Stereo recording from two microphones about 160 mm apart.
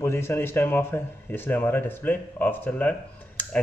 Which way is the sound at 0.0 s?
15° left (ahead or behind).